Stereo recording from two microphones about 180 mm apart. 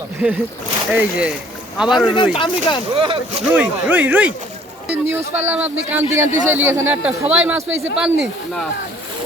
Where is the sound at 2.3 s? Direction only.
25° left (ahead or behind).